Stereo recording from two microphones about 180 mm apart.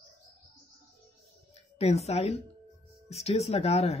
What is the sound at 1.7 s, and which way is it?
Speech, 35° left (ahead or behind).